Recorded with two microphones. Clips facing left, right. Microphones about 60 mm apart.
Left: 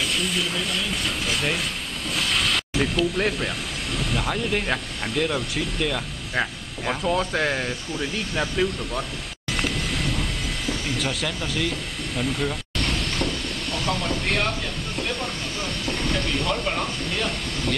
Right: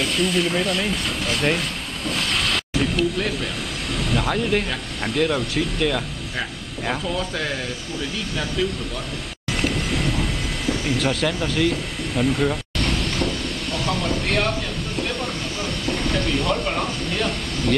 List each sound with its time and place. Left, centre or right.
0.0 s speech: centre
7.1 s speech: left
9.5 s vehicle: centre
11.0 s speech: centre
11.4 s a sound: centre
15.0 s train: centre